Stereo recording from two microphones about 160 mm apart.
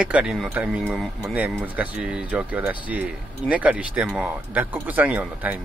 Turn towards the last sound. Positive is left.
turn(degrees=-10)  # may be behind; listen again after turning